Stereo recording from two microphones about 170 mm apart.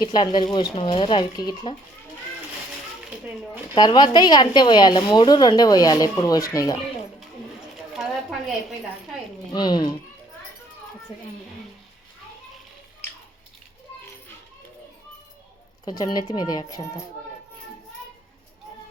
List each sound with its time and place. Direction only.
0.0 s a woman's voice: 25° left (ahead or behind)
3.8 s a woman's voice: 25° left (ahead or behind)
8.0 s a sound: 5° right (ahead or behind)
9.5 s a woman's voice: 25° left (ahead or behind)
15.8 s a woman's voice: 25° left (ahead or behind)